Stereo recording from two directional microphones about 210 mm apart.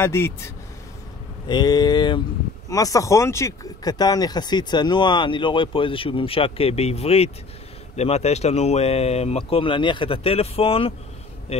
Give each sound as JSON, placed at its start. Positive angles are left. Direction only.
{"t": 0.0, "sound": "speech", "side_deg": 10}
{"t": 1.5, "sound": "speech", "side_deg": 20}